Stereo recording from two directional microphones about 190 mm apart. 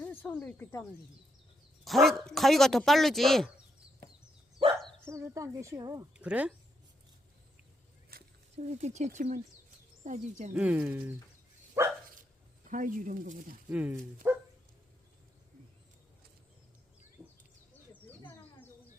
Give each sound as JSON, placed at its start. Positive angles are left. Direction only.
{"t": 0.0, "sound": "speech", "side_deg": 10}
{"t": 1.8, "sound": "speech", "side_deg": 0}
{"t": 4.6, "sound": "dog", "side_deg": -30}
{"t": 5.0, "sound": "speech", "side_deg": -15}
{"t": 6.1, "sound": "speech", "side_deg": -5}
{"t": 8.1, "sound": "a sound", "side_deg": -50}
{"t": 8.5, "sound": "speech", "side_deg": -35}
{"t": 10.5, "sound": "speech", "side_deg": -5}
{"t": 11.8, "sound": "dog", "side_deg": -15}
{"t": 12.7, "sound": "speech", "side_deg": -45}
{"t": 13.7, "sound": "speech", "side_deg": -5}
{"t": 14.2, "sound": "dog", "side_deg": -10}
{"t": 18.3, "sound": "bird", "side_deg": 10}